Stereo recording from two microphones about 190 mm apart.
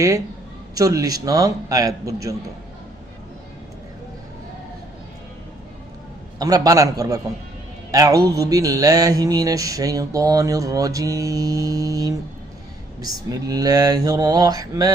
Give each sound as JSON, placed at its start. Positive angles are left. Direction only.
{"t": 0.8, "sound": "mantra", "side_deg": -20}
{"t": 6.4, "sound": "speech", "side_deg": -20}
{"t": 8.3, "sound": "mantra", "side_deg": -20}
{"t": 13.0, "sound": "speech", "side_deg": -20}